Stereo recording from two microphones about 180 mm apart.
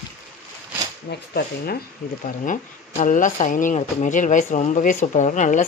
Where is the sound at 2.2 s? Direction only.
45° left (ahead or behind).